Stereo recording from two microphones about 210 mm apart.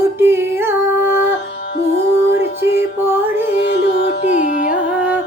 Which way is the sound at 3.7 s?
50° left (ahead or behind).